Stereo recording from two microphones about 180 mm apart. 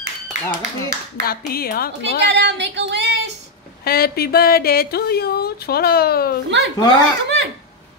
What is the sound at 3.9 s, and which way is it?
Speech, 60° left (ahead or behind).